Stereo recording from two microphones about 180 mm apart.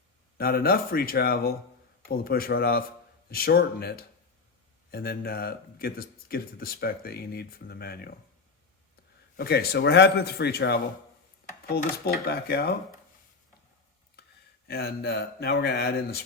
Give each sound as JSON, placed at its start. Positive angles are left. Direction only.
{"t": 0.3, "sound": "speech", "side_deg": 55}
{"t": 9.4, "sound": "speech", "side_deg": 65}
{"t": 14.7, "sound": "speech", "side_deg": 60}